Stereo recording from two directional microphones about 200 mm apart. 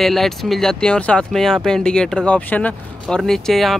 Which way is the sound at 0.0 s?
Centre (ahead or behind).